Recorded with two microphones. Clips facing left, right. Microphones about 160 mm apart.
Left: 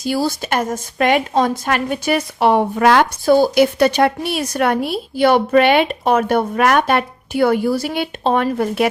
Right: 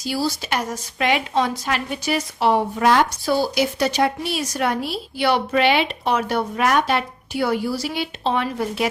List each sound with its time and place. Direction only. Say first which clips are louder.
0.0 s a woman's voice: left 5 dB; 50° left (ahead or behind)
3.2 s a woman's voice: left 8 dB; 50° left (ahead or behind)